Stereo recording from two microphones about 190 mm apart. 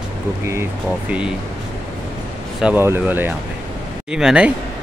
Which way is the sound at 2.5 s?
10° right (ahead or behind).